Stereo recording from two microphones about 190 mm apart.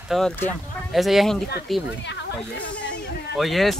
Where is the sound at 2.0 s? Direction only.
70° left (ahead or behind).